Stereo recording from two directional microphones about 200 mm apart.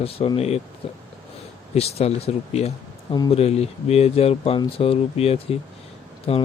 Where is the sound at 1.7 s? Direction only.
30° left (ahead or behind).